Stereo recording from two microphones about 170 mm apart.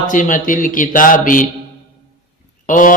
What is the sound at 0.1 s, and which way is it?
Speech, 50° left (ahead or behind).